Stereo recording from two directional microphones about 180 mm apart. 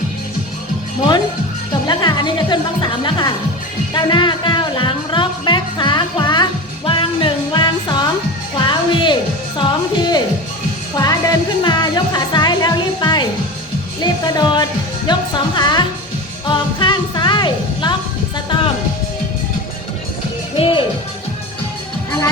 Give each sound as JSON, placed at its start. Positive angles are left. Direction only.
{"t": 1.9, "sound": "speech", "side_deg": 25}
{"t": 3.9, "sound": "music", "side_deg": 25}
{"t": 20.6, "sound": "speech", "side_deg": 30}